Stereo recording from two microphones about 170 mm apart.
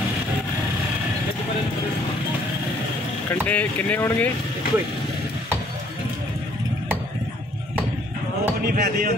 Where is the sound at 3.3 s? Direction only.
10° left (ahead or behind).